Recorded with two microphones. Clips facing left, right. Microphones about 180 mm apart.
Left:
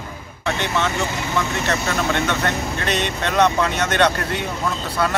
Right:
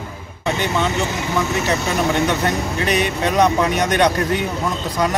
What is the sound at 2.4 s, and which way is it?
Speech, 10° right (ahead or behind).